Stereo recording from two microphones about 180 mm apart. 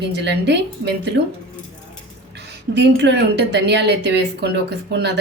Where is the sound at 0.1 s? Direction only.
70° right (ahead or behind).